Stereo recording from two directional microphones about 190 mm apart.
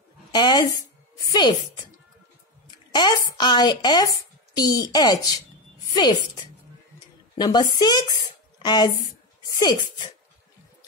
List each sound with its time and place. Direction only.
0.3 s a woman's voice: 20° left (ahead or behind)
2.9 s a woman's voice: 20° left (ahead or behind)